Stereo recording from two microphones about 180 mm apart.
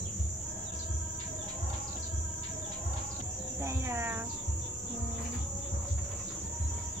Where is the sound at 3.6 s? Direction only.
15° right (ahead or behind).